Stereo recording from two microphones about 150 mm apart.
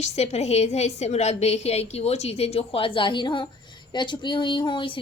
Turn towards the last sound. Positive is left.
turn(degrees=35)  # may be behind; listen again after turning